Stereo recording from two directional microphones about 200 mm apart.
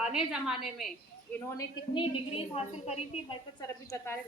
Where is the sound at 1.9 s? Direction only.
25° left (ahead or behind).